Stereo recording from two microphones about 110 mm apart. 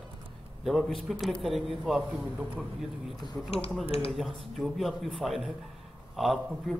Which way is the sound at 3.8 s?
60° left (ahead or behind).